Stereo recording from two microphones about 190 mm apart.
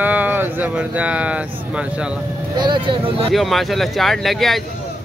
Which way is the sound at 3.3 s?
Centre (ahead or behind).